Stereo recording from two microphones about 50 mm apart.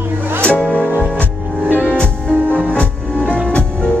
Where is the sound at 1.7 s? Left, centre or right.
Left.